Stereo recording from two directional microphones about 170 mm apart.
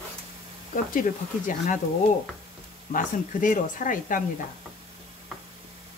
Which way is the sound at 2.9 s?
50° left (ahead or behind).